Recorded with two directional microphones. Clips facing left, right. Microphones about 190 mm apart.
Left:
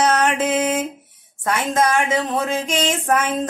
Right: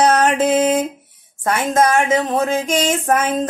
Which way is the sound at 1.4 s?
45° right (ahead or behind).